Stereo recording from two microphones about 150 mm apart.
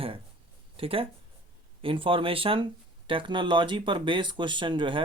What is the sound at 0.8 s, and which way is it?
Speech, 40° right (ahead or behind).